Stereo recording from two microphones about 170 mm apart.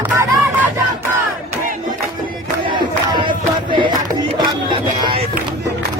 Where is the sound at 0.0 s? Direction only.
10° right (ahead or behind).